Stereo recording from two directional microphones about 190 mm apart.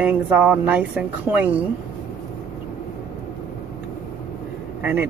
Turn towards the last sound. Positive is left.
turn(degrees=-10)  # may be behind; listen again after turning